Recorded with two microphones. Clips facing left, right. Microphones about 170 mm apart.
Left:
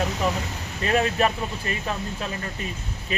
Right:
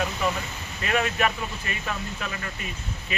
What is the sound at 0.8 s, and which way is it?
Speech, 35° left (ahead or behind).